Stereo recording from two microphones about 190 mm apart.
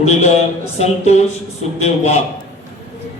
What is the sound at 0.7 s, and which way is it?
A man's voice, 35° left (ahead or behind).